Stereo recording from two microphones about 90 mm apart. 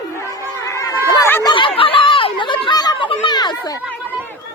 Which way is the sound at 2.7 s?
50° left (ahead or behind).